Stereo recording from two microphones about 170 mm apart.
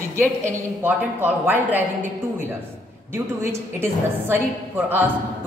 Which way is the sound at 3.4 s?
15° right (ahead or behind).